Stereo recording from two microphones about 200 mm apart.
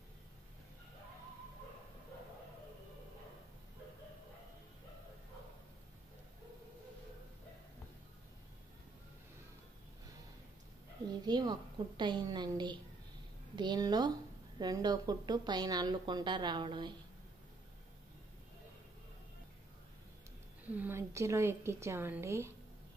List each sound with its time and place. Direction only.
11.1 s a sound: 20° right (ahead or behind)
12.0 s a woman's voice: 20° right (ahead or behind)
20.6 s a woman's voice: 10° right (ahead or behind)